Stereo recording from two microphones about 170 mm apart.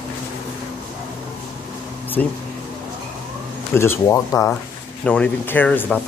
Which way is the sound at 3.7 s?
15° left (ahead or behind).